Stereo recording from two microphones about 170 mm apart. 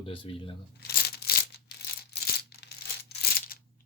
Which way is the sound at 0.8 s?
70° left (ahead or behind).